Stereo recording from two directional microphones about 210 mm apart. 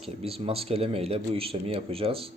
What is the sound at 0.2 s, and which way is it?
Speech, 30° right (ahead or behind).